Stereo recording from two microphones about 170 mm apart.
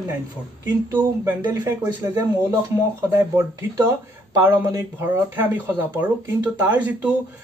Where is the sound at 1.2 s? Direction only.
15° right (ahead or behind).